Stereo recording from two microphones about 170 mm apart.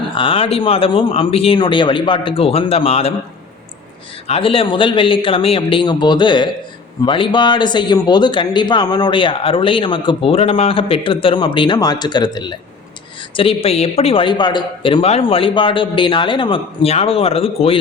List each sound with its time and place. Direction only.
0.1 s a man's voice: 30° left (ahead or behind)
4.3 s a man's voice: 35° left (ahead or behind)